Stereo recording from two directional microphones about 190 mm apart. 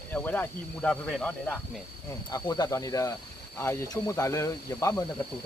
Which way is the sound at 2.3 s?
20° left (ahead or behind).